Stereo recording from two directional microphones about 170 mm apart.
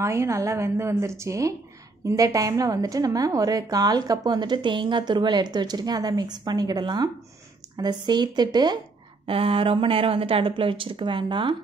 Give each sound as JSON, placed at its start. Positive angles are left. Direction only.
{"t": 0.0, "sound": "a woman's voice", "side_deg": -15}